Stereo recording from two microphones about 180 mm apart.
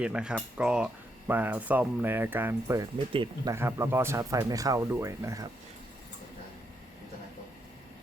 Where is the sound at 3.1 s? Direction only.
30° right (ahead or behind).